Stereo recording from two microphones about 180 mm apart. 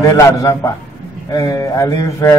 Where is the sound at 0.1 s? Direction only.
15° left (ahead or behind).